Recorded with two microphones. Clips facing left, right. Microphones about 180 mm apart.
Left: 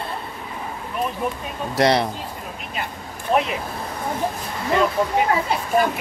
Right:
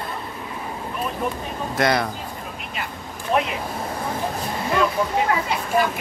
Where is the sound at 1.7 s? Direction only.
30° left (ahead or behind).